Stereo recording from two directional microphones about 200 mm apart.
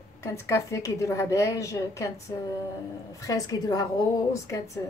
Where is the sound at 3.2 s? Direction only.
15° left (ahead or behind).